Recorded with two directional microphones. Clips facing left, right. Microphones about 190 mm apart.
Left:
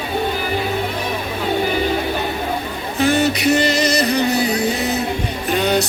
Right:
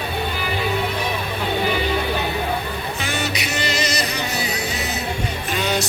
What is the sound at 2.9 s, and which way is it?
Music, 55° left (ahead or behind).